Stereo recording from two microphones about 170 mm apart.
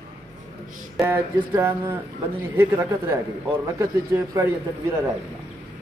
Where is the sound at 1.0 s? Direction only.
15° right (ahead or behind).